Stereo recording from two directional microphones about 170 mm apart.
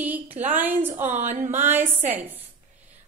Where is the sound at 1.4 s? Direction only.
10° right (ahead or behind).